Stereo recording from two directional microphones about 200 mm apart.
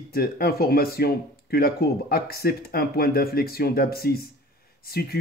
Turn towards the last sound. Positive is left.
turn(degrees=50)  # may be behind; listen again after turning